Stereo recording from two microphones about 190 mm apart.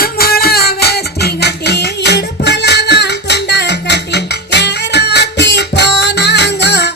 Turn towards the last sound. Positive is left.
turn(degrees=60)  # may be behind; listen again after turning